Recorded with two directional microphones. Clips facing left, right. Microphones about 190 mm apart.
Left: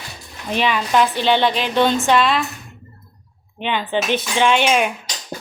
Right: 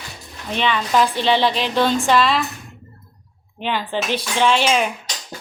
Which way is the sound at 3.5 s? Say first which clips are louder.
Left 2 dB; centre (ahead or behind).